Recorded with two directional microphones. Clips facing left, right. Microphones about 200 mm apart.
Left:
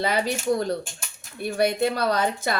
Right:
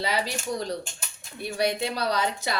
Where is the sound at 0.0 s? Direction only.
50° left (ahead or behind).